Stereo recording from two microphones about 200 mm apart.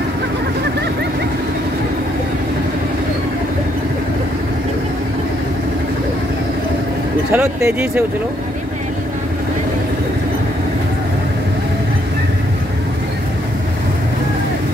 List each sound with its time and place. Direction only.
7.3 s speech: 10° right (ahead or behind)